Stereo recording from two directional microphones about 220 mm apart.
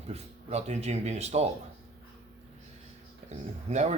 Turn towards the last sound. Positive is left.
turn(degrees=-30)  # may be behind; listen again after turning